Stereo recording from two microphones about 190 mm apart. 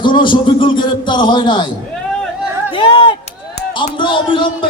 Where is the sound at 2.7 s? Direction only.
25° left (ahead or behind).